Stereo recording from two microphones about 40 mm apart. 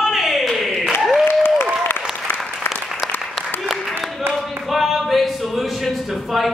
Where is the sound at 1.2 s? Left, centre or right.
Left.